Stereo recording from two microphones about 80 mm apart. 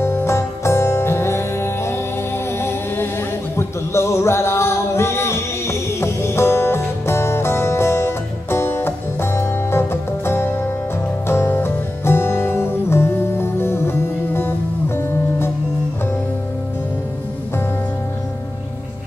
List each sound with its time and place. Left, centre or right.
0.0 s music: left